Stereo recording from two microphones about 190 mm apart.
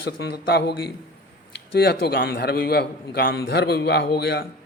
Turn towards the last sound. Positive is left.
turn(degrees=60)  # may be behind; listen again after turning